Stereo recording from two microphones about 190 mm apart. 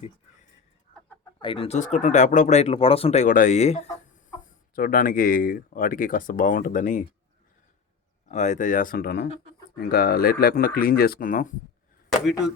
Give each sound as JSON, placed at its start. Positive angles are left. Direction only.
{"t": 1.4, "sound": "speech", "side_deg": 25}
{"t": 4.7, "sound": "speech", "side_deg": 50}
{"t": 8.3, "sound": "speech", "side_deg": 40}